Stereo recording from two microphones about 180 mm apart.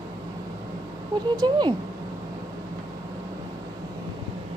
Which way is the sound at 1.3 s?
25° right (ahead or behind).